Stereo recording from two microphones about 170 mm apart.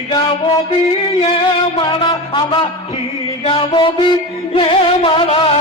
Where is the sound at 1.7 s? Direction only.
25° left (ahead or behind).